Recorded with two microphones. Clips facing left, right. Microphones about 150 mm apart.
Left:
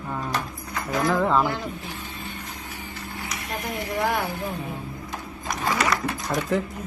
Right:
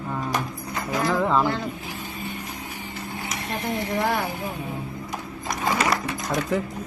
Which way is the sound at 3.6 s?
25° right (ahead or behind).